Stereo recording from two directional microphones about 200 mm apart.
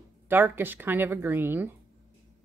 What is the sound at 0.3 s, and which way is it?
Speech, 10° right (ahead or behind).